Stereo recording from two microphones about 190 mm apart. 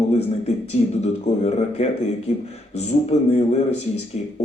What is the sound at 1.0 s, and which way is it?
A man's voice, 35° left (ahead or behind).